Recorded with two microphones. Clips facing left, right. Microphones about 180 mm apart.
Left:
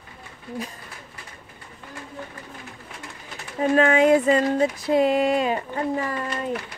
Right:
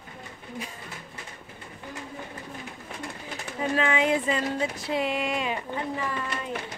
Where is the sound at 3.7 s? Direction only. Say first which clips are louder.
Left 8 dB; 45° left (ahead or behind).